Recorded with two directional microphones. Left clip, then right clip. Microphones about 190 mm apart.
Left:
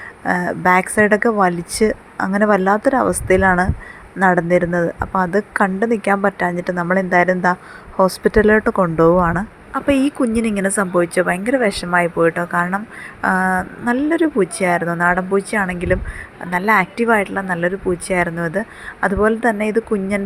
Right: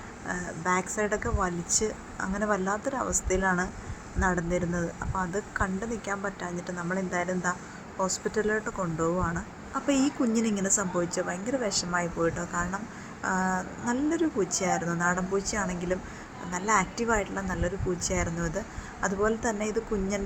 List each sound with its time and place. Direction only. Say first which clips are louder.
0.3 s speech: left 14 dB; 35° left (ahead or behind)